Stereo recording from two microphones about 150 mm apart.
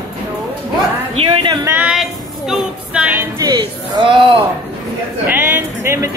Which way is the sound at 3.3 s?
25° right (ahead or behind).